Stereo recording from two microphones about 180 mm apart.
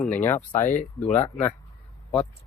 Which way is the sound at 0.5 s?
45° left (ahead or behind).